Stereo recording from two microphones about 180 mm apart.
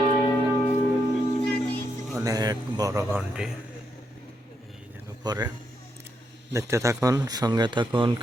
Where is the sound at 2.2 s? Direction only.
20° right (ahead or behind).